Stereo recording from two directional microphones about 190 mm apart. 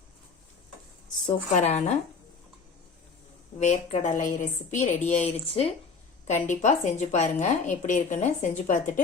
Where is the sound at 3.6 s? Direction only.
40° left (ahead or behind).